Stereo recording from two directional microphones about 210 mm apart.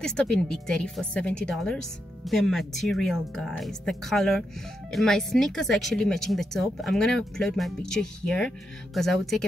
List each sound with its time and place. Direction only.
0.0 s speech: 5° left (ahead or behind)